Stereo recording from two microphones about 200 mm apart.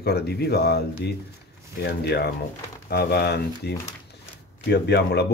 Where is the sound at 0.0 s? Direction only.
50° left (ahead or behind).